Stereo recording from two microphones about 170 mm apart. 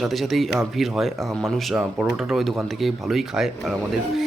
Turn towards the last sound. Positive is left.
turn(degrees=0)  # may be behind; listen again after turning